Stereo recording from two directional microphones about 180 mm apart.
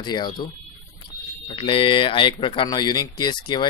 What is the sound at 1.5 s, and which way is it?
Speech, 30° left (ahead or behind).